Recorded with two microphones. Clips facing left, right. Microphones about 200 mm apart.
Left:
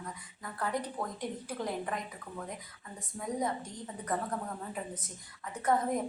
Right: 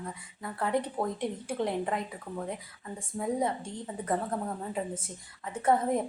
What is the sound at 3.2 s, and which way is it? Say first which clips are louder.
Speech: right 6 dB; 30° right (ahead or behind).